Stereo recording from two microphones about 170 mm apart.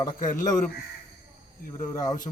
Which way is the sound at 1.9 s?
20° left (ahead or behind).